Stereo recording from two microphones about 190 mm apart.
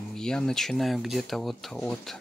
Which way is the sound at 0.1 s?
5° left (ahead or behind).